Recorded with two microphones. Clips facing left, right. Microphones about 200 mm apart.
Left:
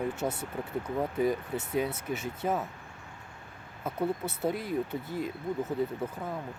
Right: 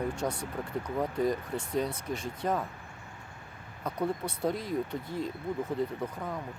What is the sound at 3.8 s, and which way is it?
Speech, 5° left (ahead or behind).